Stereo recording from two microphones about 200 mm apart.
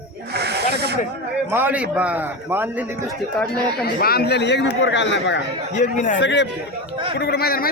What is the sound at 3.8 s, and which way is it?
Speech, 50° left (ahead or behind).